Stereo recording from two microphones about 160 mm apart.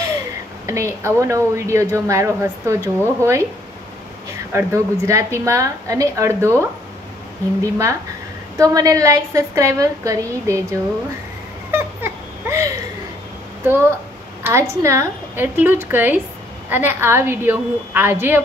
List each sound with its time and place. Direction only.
0.7 s speech: 15° right (ahead or behind)
4.5 s a woman's voice: 20° right (ahead or behind)
8.5 s a woman's voice: 20° right (ahead or behind)
11.7 s a sound: 15° right (ahead or behind)
13.7 s speech: 15° right (ahead or behind)